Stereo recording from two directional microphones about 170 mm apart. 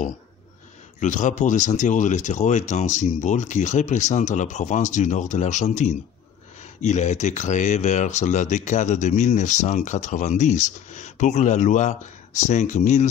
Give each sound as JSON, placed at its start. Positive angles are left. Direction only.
{"t": 0.9, "sound": "speech", "side_deg": 45}